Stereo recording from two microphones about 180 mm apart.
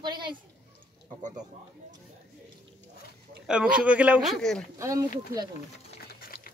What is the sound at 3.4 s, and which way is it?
Speech, 5° right (ahead or behind).